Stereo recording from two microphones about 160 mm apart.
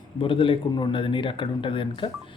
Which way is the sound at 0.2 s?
30° left (ahead or behind).